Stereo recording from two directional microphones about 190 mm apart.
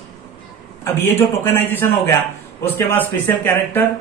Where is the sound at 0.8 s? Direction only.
10° left (ahead or behind).